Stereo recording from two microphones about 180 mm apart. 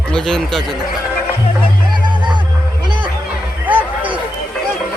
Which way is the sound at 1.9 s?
25° right (ahead or behind).